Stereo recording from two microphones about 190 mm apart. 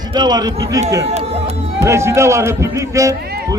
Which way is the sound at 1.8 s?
15° right (ahead or behind).